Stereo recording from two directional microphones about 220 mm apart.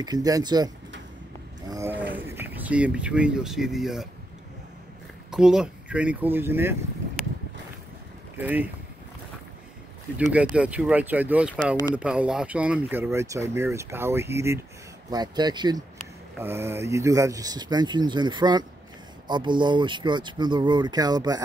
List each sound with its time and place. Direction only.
0.0 s speech: 15° right (ahead or behind)
1.7 s speech: 10° right (ahead or behind)
5.3 s speech: 5° right (ahead or behind)
8.4 s speech: 10° right (ahead or behind)
10.1 s speech: 5° right (ahead or behind)